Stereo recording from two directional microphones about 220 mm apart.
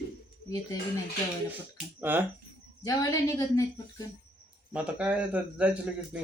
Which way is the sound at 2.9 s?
15° left (ahead or behind).